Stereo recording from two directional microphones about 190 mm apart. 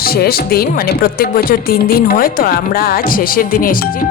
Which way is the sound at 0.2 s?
55° left (ahead or behind).